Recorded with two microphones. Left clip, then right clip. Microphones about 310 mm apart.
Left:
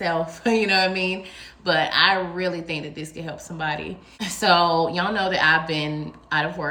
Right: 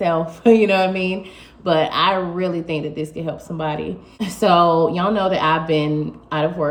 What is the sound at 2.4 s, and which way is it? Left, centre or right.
Speech, centre.